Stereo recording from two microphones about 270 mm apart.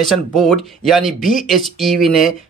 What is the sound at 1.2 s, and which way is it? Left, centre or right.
Speech, left.